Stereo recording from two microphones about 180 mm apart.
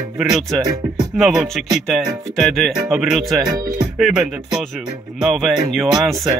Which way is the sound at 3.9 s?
Centre (ahead or behind).